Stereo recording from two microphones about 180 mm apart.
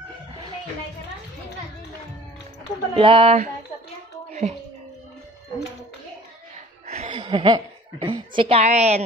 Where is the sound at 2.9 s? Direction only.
30° right (ahead or behind).